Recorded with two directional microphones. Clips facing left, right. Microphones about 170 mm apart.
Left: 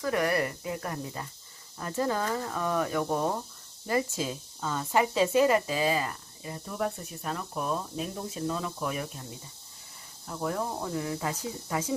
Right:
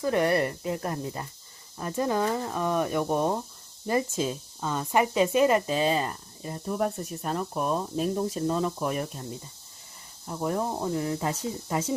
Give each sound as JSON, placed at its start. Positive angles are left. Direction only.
{"t": 0.0, "sound": "speech", "side_deg": -25}
{"t": 6.4, "sound": "speech", "side_deg": -40}
{"t": 10.2, "sound": "speech", "side_deg": -20}